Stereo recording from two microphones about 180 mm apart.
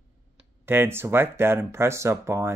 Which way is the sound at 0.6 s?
10° right (ahead or behind).